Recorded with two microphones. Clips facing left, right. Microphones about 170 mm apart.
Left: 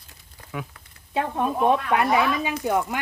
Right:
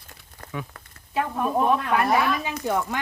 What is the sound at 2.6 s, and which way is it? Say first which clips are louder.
Speech: left 1 dB; 15° left (ahead or behind).